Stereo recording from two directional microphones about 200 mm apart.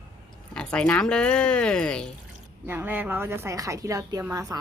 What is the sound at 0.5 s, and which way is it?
Speech, 5° left (ahead or behind).